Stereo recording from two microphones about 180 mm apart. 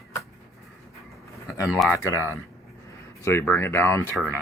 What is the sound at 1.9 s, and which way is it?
Speech, 15° left (ahead or behind).